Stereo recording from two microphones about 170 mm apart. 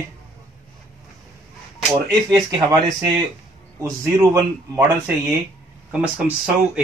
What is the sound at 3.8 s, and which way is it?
Speech, 20° right (ahead or behind).